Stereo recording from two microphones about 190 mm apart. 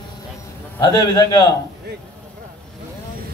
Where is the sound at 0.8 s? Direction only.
25° left (ahead or behind).